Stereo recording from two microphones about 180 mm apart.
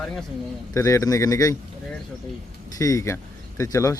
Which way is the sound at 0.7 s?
15° left (ahead or behind).